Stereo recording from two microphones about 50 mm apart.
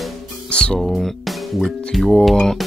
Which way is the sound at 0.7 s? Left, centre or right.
Centre.